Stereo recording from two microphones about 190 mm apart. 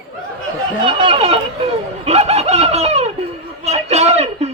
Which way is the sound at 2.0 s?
35° right (ahead or behind).